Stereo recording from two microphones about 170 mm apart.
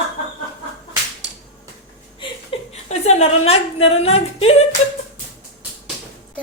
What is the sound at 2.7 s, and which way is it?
Speech, 40° left (ahead or behind).